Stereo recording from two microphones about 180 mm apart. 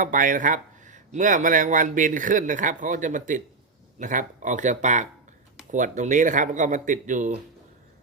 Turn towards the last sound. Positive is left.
turn(degrees=-45)  # may be behind; listen again after turning